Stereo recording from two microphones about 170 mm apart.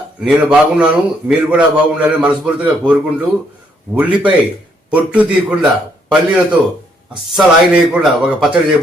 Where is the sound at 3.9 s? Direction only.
10° right (ahead or behind).